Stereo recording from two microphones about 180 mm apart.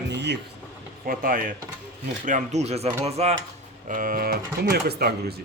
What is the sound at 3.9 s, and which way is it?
Speech, 50° right (ahead or behind).